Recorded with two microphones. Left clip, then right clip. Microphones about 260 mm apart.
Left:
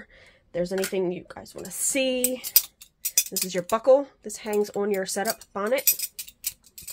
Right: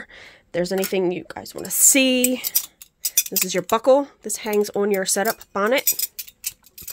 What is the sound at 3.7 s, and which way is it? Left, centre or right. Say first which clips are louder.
Speech: right 3 dB; right.